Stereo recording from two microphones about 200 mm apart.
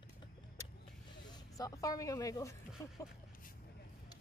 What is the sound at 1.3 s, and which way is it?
Speech, 20° left (ahead or behind).